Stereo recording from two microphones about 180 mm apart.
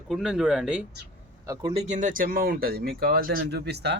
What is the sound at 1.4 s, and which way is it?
Speech, 20° right (ahead or behind).